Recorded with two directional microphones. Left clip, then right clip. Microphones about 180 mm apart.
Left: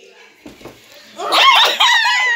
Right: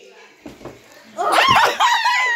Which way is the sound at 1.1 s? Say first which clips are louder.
Left 3 dB; 15° right (ahead or behind).